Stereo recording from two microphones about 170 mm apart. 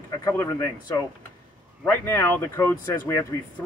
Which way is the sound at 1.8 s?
15° left (ahead or behind).